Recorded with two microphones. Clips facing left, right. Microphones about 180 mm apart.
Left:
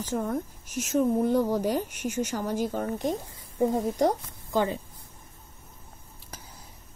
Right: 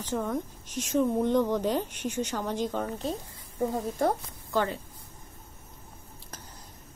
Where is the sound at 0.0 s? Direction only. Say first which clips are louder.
Left 1 dB; 10° left (ahead or behind).